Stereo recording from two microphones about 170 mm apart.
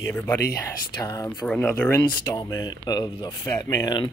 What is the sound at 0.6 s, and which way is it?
Speech, 20° left (ahead or behind).